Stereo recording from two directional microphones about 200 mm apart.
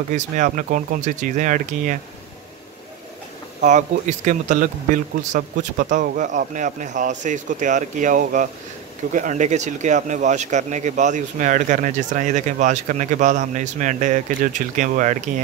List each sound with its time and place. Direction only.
0.1 s speech: 40° right (ahead or behind)
3.6 s speech: 35° right (ahead or behind)